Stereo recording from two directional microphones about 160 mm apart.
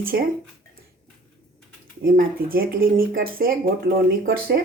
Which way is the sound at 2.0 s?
65° right (ahead or behind).